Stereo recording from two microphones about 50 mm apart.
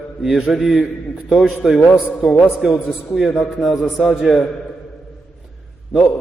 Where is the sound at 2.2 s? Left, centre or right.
Centre.